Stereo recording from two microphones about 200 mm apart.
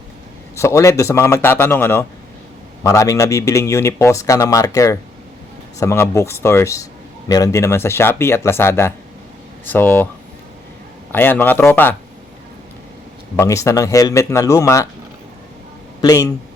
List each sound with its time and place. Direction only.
0.5 s speech: 15° left (ahead or behind)
11.1 s speech: 10° left (ahead or behind)
13.3 s speech: 15° left (ahead or behind)
16.0 s speech: 15° left (ahead or behind)